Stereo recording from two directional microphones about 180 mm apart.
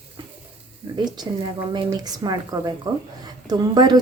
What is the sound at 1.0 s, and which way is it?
A woman's voice, 25° right (ahead or behind).